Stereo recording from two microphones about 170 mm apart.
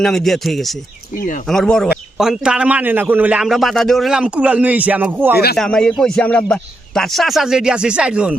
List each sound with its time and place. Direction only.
0.0 s a man's voice: 5° left (ahead or behind)
1.1 s speech: 55° left (ahead or behind)
1.5 s a man's voice: 5° left (ahead or behind)
5.5 s a man's voice: 5° left (ahead or behind)